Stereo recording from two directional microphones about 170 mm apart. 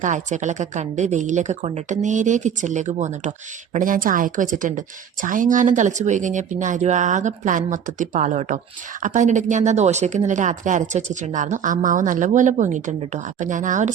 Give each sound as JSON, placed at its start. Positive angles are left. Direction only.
{"t": 0.0, "sound": "speech", "side_deg": -45}